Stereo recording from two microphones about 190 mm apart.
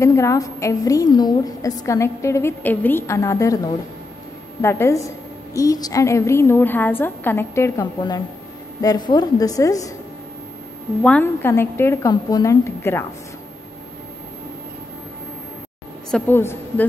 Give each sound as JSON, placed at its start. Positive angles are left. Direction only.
{"t": 0.0, "sound": "a woman's voice", "side_deg": 15}
{"t": 4.6, "sound": "a woman's voice", "side_deg": 15}
{"t": 11.0, "sound": "a woman's voice", "side_deg": 5}
{"t": 16.1, "sound": "a woman's voice", "side_deg": 10}